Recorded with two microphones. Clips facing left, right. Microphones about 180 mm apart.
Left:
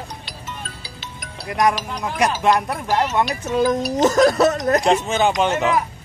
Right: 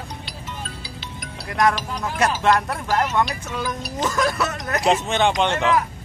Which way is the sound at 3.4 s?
40° left (ahead or behind).